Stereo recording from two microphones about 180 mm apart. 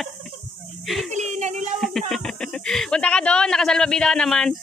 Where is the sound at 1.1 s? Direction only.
40° right (ahead or behind).